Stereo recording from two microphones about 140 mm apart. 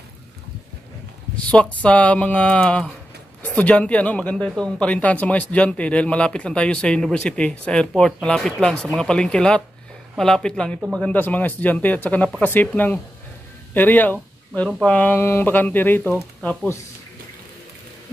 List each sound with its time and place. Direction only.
1.3 s speech: 10° left (ahead or behind)